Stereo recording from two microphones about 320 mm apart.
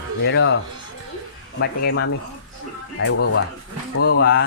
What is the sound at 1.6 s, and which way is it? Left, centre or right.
Speech, left.